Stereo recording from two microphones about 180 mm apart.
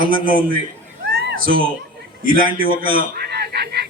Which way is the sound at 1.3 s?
90° right.